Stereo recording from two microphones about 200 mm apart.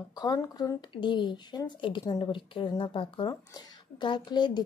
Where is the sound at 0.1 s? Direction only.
20° left (ahead or behind).